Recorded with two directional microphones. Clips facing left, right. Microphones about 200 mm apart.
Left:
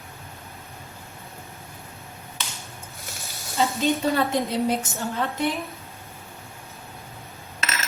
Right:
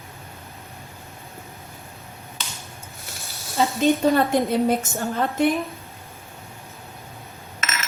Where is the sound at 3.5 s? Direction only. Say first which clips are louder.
Right 3 dB; 50° right (ahead or behind).